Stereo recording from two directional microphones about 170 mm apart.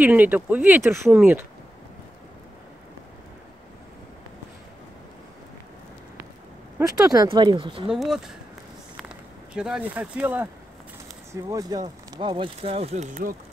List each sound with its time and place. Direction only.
0.0 s speech: 10° right (ahead or behind)
6.8 s speech: 20° right (ahead or behind)
7.9 s speech: centre (ahead or behind)
8.9 s a sound: 5° right (ahead or behind)
11.4 s speech: 20° right (ahead or behind); by 13.4 s 50° right (ahead or behind)